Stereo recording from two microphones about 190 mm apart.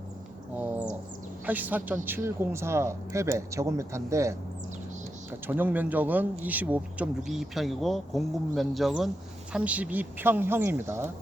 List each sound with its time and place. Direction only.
0.5 s bird: 10° right (ahead or behind)
1.5 s speech: 10° right (ahead or behind)